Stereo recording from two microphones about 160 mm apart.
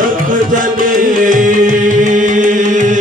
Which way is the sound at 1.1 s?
55° right (ahead or behind).